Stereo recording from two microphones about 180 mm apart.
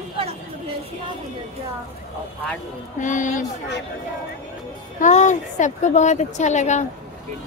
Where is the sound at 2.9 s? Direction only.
45° left (ahead or behind).